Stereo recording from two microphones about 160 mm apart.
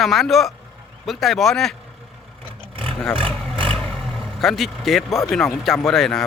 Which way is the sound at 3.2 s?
35° right (ahead or behind).